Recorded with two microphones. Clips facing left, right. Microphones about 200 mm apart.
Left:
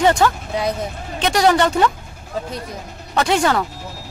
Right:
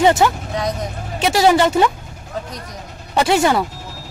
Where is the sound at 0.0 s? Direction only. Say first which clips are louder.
Right 2 dB; 15° right (ahead or behind).